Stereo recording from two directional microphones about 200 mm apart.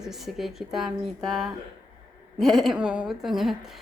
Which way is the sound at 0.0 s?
Centre (ahead or behind).